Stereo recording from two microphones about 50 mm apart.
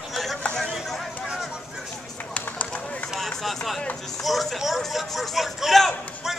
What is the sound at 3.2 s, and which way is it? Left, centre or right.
Run, centre.